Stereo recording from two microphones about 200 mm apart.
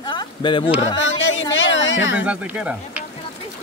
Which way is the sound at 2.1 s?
5° right (ahead or behind).